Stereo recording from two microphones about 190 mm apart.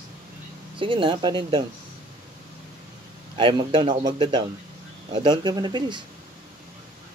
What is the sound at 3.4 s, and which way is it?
Speech, 25° right (ahead or behind).